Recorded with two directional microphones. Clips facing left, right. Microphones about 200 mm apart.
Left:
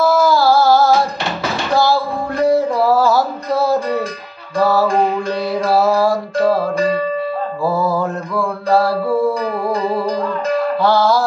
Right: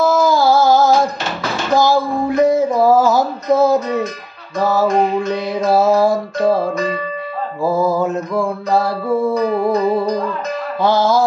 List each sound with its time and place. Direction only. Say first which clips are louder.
0.0 s a sound: even; 20° right (ahead or behind)
5.7 s music: right 2 dB; 20° right (ahead or behind)
7.9 s music: right 2 dB; 20° right (ahead or behind)
10.8 s music: right 3 dB; 20° right (ahead or behind)